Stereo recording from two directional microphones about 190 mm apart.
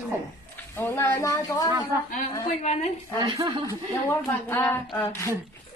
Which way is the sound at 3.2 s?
25° right (ahead or behind).